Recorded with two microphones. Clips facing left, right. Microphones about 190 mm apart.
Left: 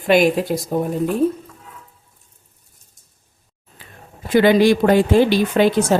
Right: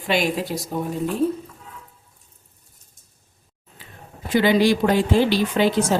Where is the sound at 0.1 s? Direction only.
50° left (ahead or behind).